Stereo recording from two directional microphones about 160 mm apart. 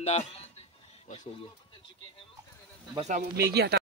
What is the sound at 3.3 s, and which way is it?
Speech, 90° right.